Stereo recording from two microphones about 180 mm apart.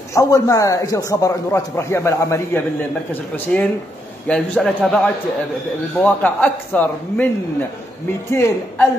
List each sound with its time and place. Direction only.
0.1 s a man's voice: 20° left (ahead or behind)
8.3 s a man's voice: 15° left (ahead or behind)